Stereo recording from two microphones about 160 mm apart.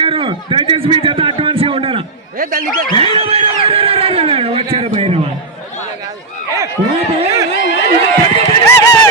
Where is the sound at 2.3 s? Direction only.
60° right (ahead or behind).